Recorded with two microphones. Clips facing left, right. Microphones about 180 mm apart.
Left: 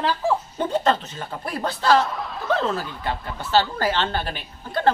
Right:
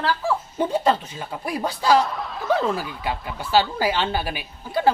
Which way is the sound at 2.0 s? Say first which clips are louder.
Right 1 dB; centre (ahead or behind).